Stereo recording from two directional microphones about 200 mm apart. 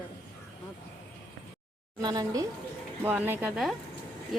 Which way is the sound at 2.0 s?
20° right (ahead or behind).